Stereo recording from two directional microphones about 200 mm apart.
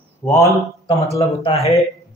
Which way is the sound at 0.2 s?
15° left (ahead or behind).